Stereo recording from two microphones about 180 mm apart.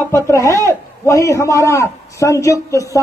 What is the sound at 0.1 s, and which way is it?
A man's voice, 15° left (ahead or behind).